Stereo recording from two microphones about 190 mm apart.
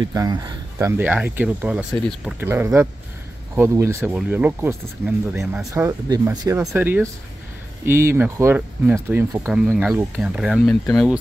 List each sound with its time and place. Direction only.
0.0 s speech: 20° right (ahead or behind)
9.4 s speech: centre (ahead or behind)